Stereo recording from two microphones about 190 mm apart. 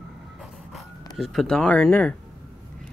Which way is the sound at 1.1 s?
Centre (ahead or behind).